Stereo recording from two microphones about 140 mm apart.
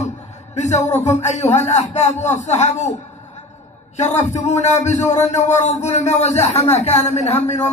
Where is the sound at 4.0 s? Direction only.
55° left (ahead or behind).